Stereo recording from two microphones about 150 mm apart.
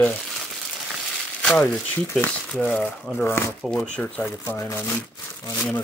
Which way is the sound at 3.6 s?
Centre (ahead or behind).